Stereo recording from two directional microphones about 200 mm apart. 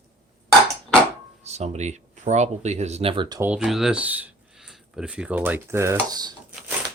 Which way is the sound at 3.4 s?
5° right (ahead or behind).